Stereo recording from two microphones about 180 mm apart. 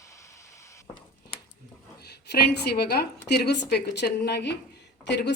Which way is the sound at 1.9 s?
65° left (ahead or behind).